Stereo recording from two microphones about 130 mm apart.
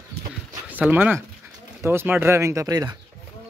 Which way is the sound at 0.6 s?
10° right (ahead or behind).